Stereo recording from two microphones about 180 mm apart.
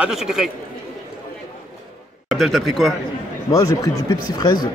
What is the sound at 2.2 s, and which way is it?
Speech, centre (ahead or behind).